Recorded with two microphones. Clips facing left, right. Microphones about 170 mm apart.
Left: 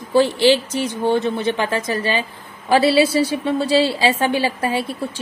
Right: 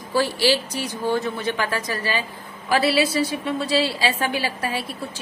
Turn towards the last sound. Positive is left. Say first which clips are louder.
# left 6 dB
turn(degrees=25)  # may be behind; listen again after turning